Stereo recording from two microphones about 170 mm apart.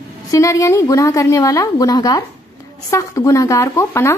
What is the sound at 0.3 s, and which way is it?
A woman's voice, 20° left (ahead or behind).